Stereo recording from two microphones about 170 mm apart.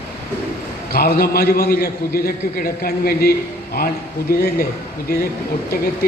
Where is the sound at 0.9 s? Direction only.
65° left (ahead or behind).